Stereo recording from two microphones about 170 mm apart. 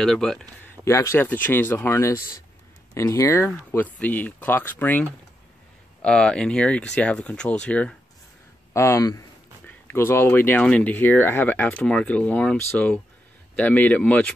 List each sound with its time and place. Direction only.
0.0 s speech: centre (ahead or behind)
0.8 s speech: 15° left (ahead or behind)